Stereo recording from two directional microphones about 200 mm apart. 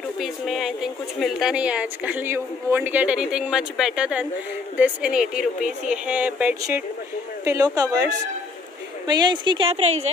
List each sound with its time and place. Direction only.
0.2 s a woman's voice: centre (ahead or behind); by 10.1 s 35° right (ahead or behind)